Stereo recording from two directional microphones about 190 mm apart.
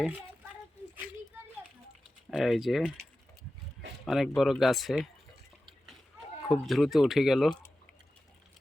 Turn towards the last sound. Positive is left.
turn(degrees=0)  # may be behind; listen again after turning